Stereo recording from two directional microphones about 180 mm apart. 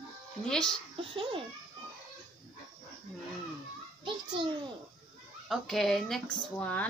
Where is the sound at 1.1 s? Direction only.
30° right (ahead or behind).